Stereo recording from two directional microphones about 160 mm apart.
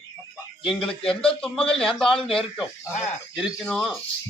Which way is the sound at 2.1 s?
35° left (ahead or behind).